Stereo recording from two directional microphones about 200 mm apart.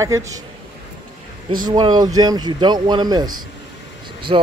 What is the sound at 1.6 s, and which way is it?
Speech, 20° right (ahead or behind).